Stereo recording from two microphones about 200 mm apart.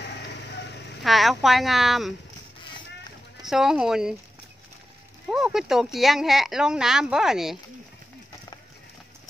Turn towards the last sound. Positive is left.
turn(degrees=0)  # may be behind; listen again after turning